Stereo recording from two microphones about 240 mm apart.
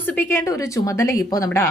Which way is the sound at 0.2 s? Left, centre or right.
Centre.